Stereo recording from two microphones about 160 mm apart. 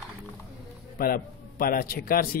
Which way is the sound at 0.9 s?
65° left (ahead or behind).